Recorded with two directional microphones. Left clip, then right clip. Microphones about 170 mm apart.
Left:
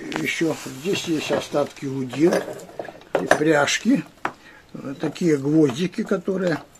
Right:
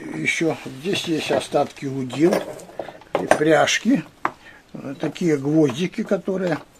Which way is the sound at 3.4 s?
25° right (ahead or behind).